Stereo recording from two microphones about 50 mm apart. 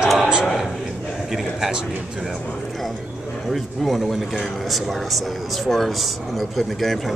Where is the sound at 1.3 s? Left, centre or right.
Centre.